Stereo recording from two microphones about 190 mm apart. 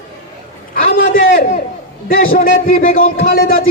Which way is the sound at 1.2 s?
50° left (ahead or behind).